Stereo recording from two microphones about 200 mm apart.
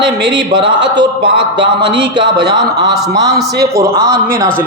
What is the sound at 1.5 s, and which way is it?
Speech, 60° right (ahead or behind).